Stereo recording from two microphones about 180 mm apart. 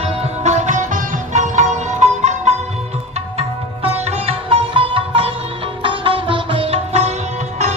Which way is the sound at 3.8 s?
35° right (ahead or behind).